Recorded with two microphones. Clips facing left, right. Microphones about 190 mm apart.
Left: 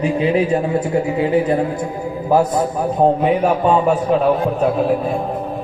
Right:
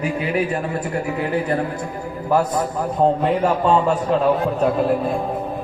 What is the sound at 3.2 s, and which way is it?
A man's voice, 10° left (ahead or behind).